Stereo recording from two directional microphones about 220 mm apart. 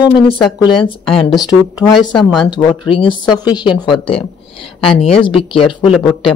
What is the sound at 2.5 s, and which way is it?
Speech, 20° left (ahead or behind).